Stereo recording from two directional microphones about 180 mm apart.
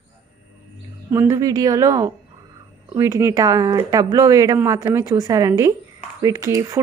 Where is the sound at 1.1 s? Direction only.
15° right (ahead or behind).